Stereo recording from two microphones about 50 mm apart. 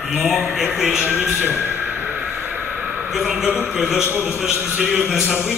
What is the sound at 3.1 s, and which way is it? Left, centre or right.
Speech, centre.